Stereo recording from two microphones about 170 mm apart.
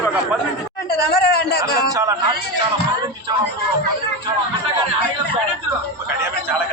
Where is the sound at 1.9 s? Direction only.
20° right (ahead or behind).